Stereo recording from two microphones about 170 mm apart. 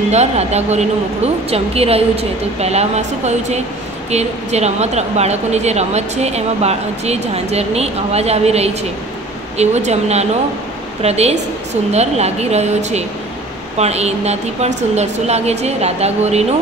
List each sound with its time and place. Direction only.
0.1 s a woman's voice: 40° right (ahead or behind)